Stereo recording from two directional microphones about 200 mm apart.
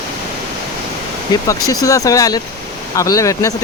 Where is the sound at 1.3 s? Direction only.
20° left (ahead or behind).